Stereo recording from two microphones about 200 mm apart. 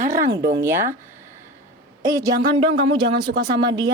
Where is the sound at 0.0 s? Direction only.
40° right (ahead or behind).